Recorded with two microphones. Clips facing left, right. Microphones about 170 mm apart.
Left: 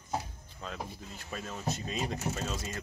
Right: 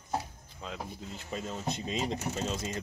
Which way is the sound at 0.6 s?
20° right (ahead or behind).